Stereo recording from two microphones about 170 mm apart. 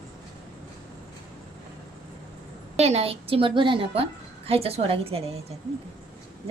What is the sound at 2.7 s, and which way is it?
A woman's voice, 40° right (ahead or behind).